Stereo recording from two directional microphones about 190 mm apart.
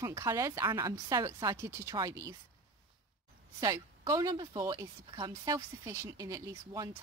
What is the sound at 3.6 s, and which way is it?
Speech, 20° right (ahead or behind).